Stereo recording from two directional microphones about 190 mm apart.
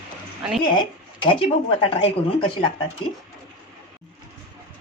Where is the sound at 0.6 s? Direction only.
25° left (ahead or behind).